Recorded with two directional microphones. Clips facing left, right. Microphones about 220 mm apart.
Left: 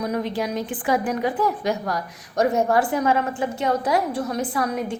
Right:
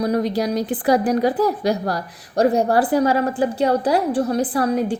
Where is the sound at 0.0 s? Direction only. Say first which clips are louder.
Right 5 dB; 35° right (ahead or behind).